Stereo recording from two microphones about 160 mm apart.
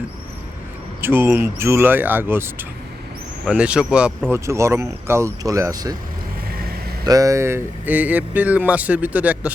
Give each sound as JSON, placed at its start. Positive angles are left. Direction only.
{"t": 1.0, "sound": "speech", "side_deg": -15}
{"t": 4.3, "sound": "speech", "side_deg": -20}
{"t": 7.0, "sound": "speech", "side_deg": -25}